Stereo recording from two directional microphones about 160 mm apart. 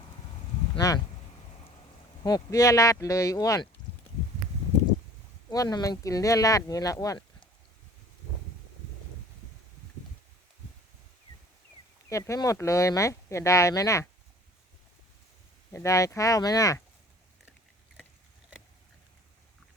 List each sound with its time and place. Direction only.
0.8 s speech: 20° left (ahead or behind)
2.2 s speech: 25° left (ahead or behind)
5.5 s speech: 25° left (ahead or behind)
12.0 s speech: 20° left (ahead or behind)
15.7 s speech: 20° left (ahead or behind)